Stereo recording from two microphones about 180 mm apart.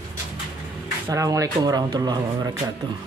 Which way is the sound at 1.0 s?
15° right (ahead or behind).